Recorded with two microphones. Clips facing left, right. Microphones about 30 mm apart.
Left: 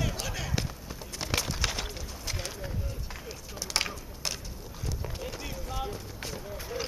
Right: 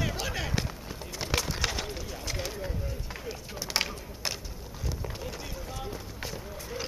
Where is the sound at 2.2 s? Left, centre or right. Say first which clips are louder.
Right 2 dB; centre.